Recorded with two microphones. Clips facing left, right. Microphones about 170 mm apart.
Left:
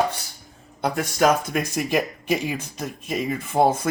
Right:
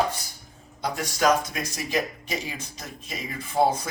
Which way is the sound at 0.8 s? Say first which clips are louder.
Left 4 dB; 55° left (ahead or behind).